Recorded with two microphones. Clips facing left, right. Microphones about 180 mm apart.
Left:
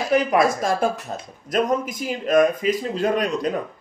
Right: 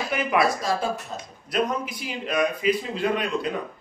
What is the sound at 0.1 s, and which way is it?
Speech, 35° left (ahead or behind).